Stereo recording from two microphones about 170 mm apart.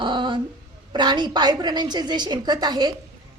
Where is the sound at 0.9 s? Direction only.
25° right (ahead or behind).